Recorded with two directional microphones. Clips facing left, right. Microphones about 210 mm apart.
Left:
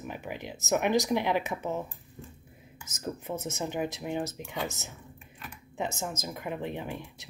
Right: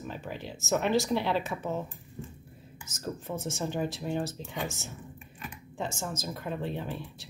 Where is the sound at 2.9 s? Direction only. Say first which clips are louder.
Left 1 dB; 20° left (ahead or behind).